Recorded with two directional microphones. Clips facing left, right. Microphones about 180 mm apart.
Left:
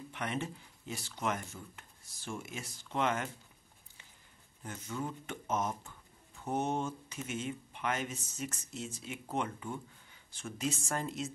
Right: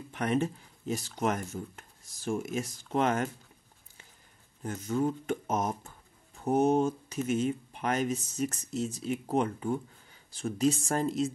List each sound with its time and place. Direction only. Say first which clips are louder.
0.1 s speech: right 9 dB; 45° right (ahead or behind)
4.6 s speech: right 10 dB; 40° right (ahead or behind)